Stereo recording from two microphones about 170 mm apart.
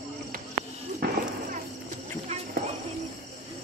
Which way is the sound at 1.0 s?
70° right (ahead or behind).